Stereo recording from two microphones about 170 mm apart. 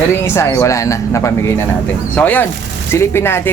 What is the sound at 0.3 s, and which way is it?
Speech, 15° left (ahead or behind).